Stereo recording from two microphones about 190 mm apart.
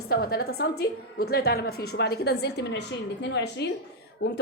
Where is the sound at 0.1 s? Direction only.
55° left (ahead or behind).